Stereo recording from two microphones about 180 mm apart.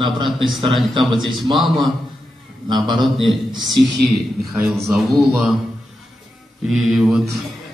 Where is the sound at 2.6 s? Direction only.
25° right (ahead or behind).